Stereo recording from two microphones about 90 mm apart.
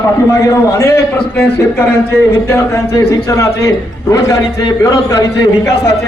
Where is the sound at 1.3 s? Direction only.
25° left (ahead or behind).